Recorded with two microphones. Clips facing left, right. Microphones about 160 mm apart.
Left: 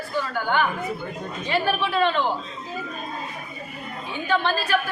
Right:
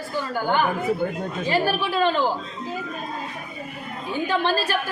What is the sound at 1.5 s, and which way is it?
Speech, 35° right (ahead or behind).